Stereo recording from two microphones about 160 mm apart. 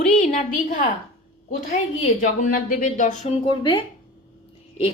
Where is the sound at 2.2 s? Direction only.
55° left (ahead or behind).